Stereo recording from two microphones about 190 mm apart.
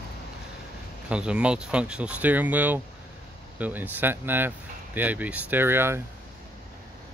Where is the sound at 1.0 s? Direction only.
5° right (ahead or behind).